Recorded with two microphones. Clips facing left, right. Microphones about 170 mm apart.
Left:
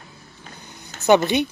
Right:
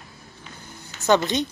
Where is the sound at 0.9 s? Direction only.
45° left (ahead or behind).